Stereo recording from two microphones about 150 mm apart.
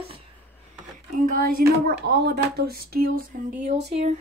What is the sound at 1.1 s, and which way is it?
Speech, 70° right (ahead or behind).